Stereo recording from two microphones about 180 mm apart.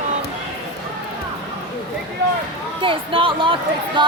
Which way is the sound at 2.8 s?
30° right (ahead or behind).